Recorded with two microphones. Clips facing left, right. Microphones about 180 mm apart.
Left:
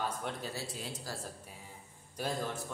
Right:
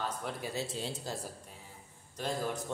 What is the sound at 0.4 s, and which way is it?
Speech, 25° right (ahead or behind).